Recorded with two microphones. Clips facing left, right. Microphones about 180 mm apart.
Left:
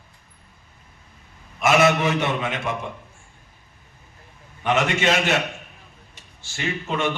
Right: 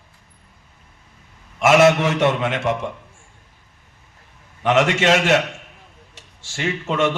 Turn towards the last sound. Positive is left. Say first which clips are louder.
# right 4 dB
turn(degrees=-85)